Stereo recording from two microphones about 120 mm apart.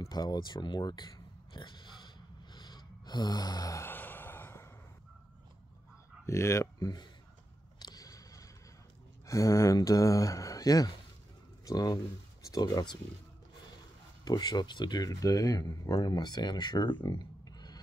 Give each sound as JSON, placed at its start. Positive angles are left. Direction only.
{"t": 0.0, "sound": "oink", "side_deg": 35}
{"t": 3.8, "sound": "a sound", "side_deg": 15}
{"t": 6.2, "sound": "speech", "side_deg": 25}
{"t": 7.8, "sound": "a sound", "side_deg": 30}
{"t": 9.2, "sound": "speech", "side_deg": 25}
{"t": 14.2, "sound": "speech", "side_deg": 35}